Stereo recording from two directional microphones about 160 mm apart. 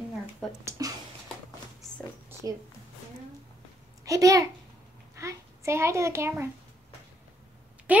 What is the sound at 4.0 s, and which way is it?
Speech, 20° right (ahead or behind).